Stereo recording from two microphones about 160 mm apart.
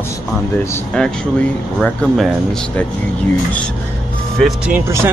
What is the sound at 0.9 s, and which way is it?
Speech, 5° left (ahead or behind).